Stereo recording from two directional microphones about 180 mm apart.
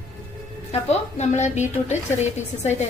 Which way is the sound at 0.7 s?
35° left (ahead or behind).